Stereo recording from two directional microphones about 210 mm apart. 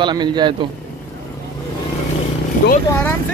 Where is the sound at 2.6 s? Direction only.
50° left (ahead or behind).